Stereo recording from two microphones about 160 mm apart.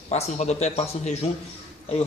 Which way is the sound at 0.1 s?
45° left (ahead or behind).